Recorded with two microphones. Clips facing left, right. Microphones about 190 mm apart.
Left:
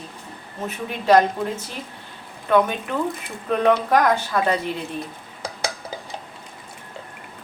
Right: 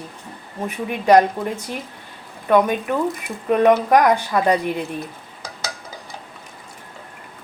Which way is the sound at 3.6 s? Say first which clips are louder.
Right 3 dB; 15° right (ahead or behind).